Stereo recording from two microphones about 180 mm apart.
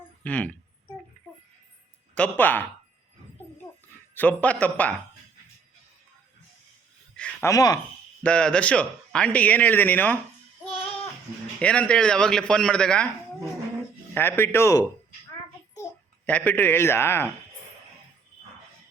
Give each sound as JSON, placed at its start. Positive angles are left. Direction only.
{"t": 0.3, "sound": "speech", "side_deg": 5}
{"t": 2.1, "sound": "speech", "side_deg": 10}
{"t": 4.1, "sound": "speech", "side_deg": 10}
{"t": 7.2, "sound": "speech", "side_deg": 10}
{"t": 7.5, "sound": "speech", "side_deg": 20}
{"t": 8.2, "sound": "speech", "side_deg": 5}
{"t": 11.6, "sound": "speech", "side_deg": 5}
{"t": 16.2, "sound": "speech", "side_deg": 10}